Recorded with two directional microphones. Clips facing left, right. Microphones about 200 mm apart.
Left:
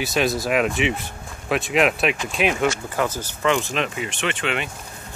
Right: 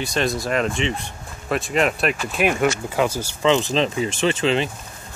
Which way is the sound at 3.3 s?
25° right (ahead or behind).